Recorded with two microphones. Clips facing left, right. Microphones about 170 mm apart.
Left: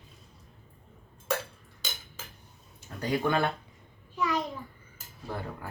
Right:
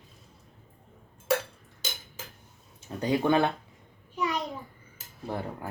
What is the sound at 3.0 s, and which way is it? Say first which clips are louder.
Speech: right 3 dB; 20° right (ahead or behind).